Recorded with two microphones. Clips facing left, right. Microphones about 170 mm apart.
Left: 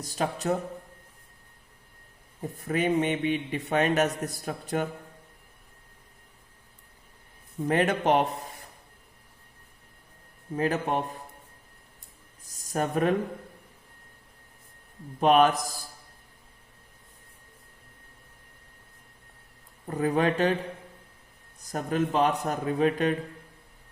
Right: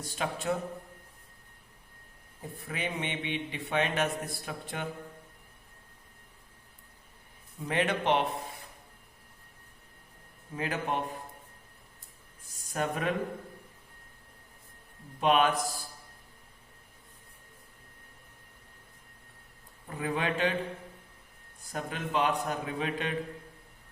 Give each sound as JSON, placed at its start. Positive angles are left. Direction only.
{"t": 0.0, "sound": "a man's voice", "side_deg": 40}
{"t": 2.6, "sound": "a man's voice", "side_deg": 45}
{"t": 7.6, "sound": "a man's voice", "side_deg": 40}
{"t": 10.5, "sound": "a man's voice", "side_deg": 40}
{"t": 12.7, "sound": "a man's voice", "side_deg": 40}
{"t": 15.2, "sound": "a man's voice", "side_deg": 40}
{"t": 19.9, "sound": "a man's voice", "side_deg": 40}
{"t": 21.6, "sound": "a man's voice", "side_deg": 40}